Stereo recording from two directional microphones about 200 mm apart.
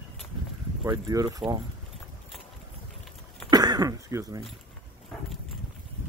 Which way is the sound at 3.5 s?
20° right (ahead or behind).